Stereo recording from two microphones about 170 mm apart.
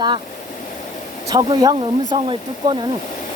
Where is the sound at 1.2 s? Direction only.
25° right (ahead or behind).